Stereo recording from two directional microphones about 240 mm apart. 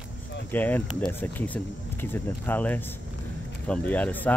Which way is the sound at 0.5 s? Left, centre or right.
Centre.